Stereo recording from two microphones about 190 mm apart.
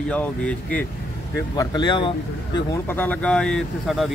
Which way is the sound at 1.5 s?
20° left (ahead or behind).